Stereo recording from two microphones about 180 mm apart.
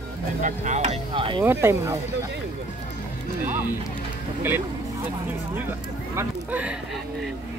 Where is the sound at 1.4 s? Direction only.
15° right (ahead or behind).